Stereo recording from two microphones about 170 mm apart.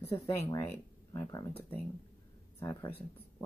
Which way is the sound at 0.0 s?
15° left (ahead or behind).